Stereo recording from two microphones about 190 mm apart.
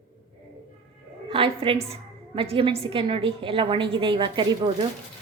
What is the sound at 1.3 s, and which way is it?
A woman's voice, 30° right (ahead or behind).